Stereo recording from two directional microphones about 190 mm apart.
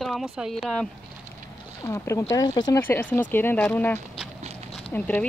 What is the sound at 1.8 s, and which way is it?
Speech, 15° left (ahead or behind).